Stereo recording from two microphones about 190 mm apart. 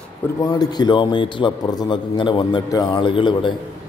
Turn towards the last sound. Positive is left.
turn(degrees=25)  # may be behind; listen again after turning